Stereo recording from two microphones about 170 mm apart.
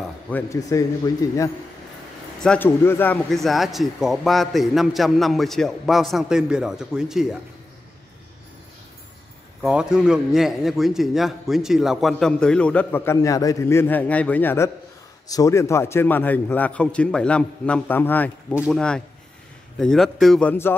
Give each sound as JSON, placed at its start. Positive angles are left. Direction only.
{"t": 0.3, "sound": "a man's voice", "side_deg": 20}
{"t": 2.4, "sound": "a man's voice", "side_deg": 10}
{"t": 3.3, "sound": "a man's voice", "side_deg": 0}
{"t": 9.6, "sound": "a man's voice", "side_deg": -5}
{"t": 18.5, "sound": "speech", "side_deg": -5}
{"t": 18.8, "sound": "a man's voice", "side_deg": 5}